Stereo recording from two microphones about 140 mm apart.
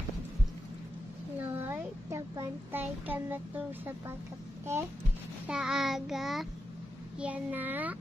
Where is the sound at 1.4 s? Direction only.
15° right (ahead or behind).